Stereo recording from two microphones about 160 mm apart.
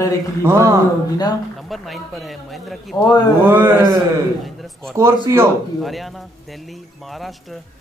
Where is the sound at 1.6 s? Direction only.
Centre (ahead or behind).